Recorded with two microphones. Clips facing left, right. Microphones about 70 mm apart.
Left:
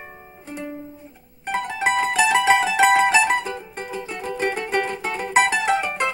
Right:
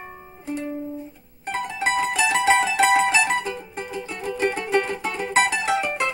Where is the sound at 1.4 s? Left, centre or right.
Centre.